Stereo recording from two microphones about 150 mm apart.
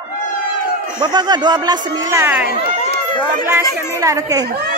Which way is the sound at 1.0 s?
25° right (ahead or behind).